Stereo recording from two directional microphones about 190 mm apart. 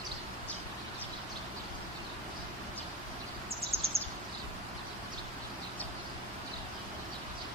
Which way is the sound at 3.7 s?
30° right (ahead or behind).